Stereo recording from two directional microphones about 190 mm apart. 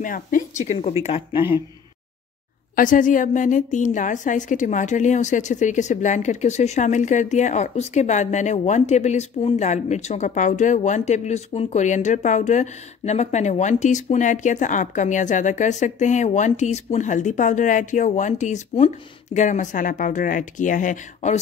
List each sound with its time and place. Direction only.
0.0 s a woman's voice: 45° left (ahead or behind); by 1.6 s 25° left (ahead or behind)
2.7 s a woman's voice: 45° left (ahead or behind)